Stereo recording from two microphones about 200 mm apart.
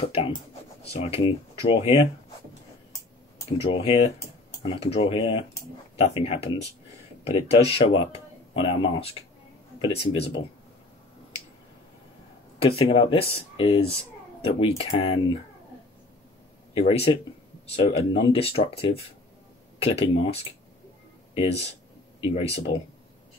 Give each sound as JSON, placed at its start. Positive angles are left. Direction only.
{"t": 0.0, "sound": "speech", "side_deg": 30}
{"t": 3.6, "sound": "speech", "side_deg": 30}
{"t": 12.5, "sound": "speech", "side_deg": 30}
{"t": 16.7, "sound": "speech", "side_deg": 30}
{"t": 21.4, "sound": "speech", "side_deg": 30}